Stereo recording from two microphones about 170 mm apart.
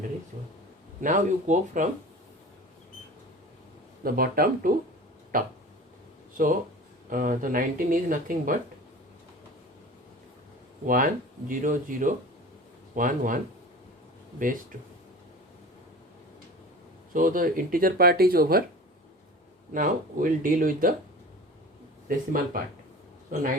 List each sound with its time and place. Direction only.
1.0 s speech: 50° right (ahead or behind)
4.0 s speech: 60° right (ahead or behind)
10.8 s speech: 55° right (ahead or behind)
17.2 s speech: 55° right (ahead or behind)
19.7 s speech: 55° right (ahead or behind)
22.1 s speech: 55° right (ahead or behind)